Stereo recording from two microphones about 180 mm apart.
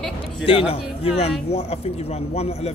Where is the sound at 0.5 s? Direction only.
30° left (ahead or behind).